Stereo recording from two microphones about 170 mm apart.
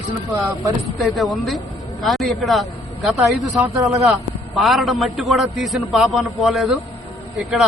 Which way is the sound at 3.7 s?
20° right (ahead or behind).